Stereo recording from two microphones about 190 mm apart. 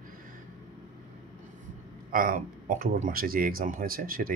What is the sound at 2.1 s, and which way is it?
Speech, 45° right (ahead or behind).